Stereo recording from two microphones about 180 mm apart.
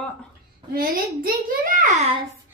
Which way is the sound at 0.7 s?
55° right (ahead or behind).